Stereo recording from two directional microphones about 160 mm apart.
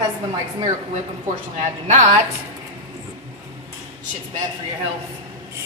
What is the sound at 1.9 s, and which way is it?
Speech, 45° right (ahead or behind).